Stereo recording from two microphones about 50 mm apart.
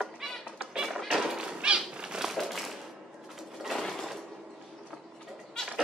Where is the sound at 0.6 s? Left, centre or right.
Centre.